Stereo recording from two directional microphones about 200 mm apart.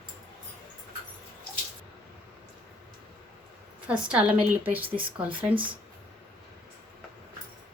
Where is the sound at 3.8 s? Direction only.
5° right (ahead or behind).